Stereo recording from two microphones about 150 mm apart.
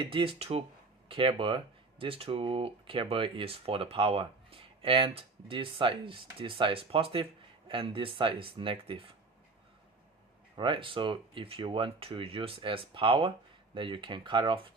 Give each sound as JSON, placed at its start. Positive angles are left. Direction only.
{"t": 0.0, "sound": "speech", "side_deg": -35}
{"t": 10.6, "sound": "speech", "side_deg": -35}